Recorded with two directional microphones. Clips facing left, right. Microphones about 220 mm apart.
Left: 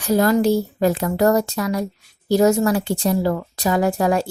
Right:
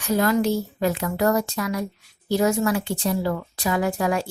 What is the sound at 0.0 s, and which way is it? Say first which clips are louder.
A woman's voice: left 4 dB; 40° left (ahead or behind).